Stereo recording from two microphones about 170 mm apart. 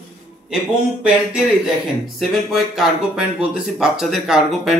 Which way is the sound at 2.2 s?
Centre (ahead or behind).